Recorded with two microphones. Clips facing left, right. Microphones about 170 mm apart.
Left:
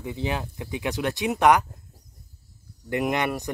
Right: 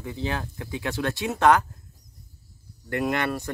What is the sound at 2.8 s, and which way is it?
Speech, 15° left (ahead or behind).